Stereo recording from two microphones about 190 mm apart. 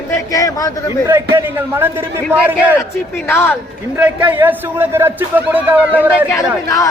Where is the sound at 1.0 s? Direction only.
15° right (ahead or behind).